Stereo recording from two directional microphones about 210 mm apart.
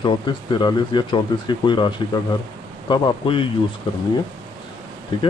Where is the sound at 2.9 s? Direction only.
25° left (ahead or behind).